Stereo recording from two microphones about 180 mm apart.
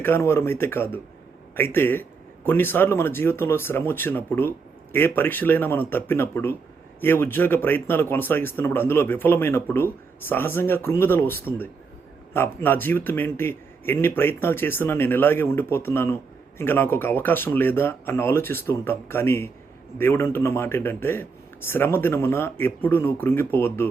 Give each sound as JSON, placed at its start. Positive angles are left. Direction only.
{"t": 0.0, "sound": "a man's voice", "side_deg": 15}